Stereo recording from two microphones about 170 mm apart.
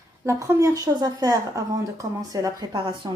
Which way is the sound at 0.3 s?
15° right (ahead or behind).